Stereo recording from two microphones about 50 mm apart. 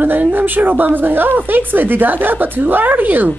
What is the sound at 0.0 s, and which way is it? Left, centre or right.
A woman's voice, right.